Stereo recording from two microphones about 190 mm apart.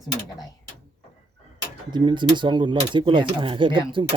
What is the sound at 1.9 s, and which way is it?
Speech, 25° right (ahead or behind).